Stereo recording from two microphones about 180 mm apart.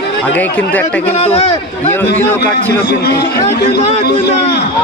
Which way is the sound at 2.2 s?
10° left (ahead or behind).